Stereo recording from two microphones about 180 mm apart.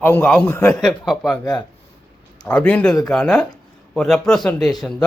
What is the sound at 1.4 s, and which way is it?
Speech, 15° left (ahead or behind).